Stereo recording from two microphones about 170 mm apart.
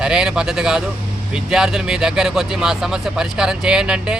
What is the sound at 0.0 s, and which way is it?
Speech, 5° right (ahead or behind).